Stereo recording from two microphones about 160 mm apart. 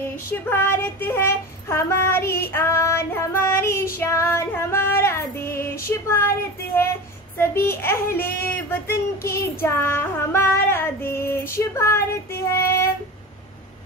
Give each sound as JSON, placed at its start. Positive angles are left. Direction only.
{"t": 0.0, "sound": "child singing", "side_deg": 15}
{"t": 5.9, "sound": "speech", "side_deg": 15}
{"t": 7.6, "sound": "child singing", "side_deg": 15}